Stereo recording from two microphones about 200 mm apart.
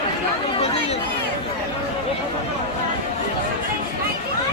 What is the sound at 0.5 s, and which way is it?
Chatter, 30° left (ahead or behind).